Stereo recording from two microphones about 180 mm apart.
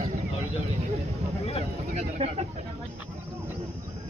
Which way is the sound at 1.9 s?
35° right (ahead or behind).